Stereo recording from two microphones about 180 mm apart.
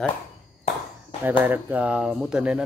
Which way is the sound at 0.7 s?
40° left (ahead or behind).